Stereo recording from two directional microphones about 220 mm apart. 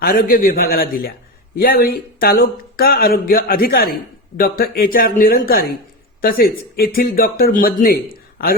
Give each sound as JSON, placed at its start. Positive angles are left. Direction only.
{"t": 0.0, "sound": "speech", "side_deg": 40}